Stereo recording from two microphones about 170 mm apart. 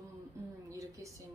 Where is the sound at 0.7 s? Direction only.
20° right (ahead or behind).